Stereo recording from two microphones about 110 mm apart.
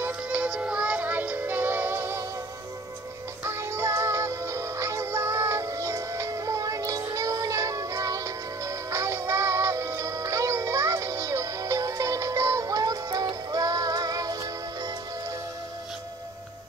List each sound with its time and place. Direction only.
0.0 s music: 10° right (ahead or behind)
3.4 s music: 25° right (ahead or behind)